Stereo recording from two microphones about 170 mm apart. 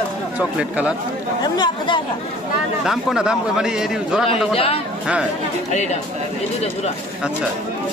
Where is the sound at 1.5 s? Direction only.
25° left (ahead or behind).